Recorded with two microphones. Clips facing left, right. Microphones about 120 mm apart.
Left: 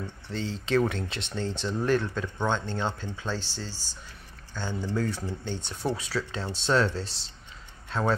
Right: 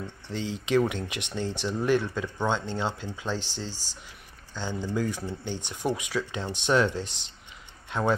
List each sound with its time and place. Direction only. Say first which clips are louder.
0.3 s speech: right 1 dB; 15° right (ahead or behind)
4.8 s speech: even; 15° right (ahead or behind)